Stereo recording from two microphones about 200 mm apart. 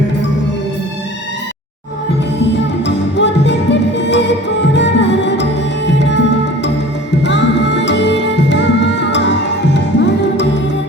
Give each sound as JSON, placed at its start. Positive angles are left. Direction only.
{"t": 2.8, "sound": "music", "side_deg": 60}